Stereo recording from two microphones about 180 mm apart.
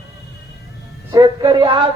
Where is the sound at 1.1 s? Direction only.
25° right (ahead or behind).